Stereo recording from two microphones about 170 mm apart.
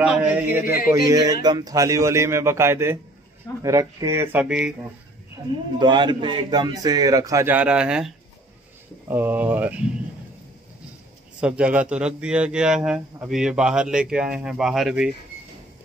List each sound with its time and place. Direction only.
0.0 s a man's voice: 5° right (ahead or behind)
5.4 s a man's voice: 20° right (ahead or behind); by 8.1 s 5° right (ahead or behind)
9.1 s speech: 10° right (ahead or behind)
11.4 s a man's voice: 5° right (ahead or behind)